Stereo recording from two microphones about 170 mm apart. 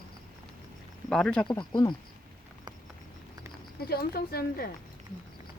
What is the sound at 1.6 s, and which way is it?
Speech, 25° left (ahead or behind).